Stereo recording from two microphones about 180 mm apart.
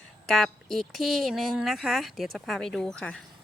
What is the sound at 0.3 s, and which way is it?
A woman's voice, centre (ahead or behind).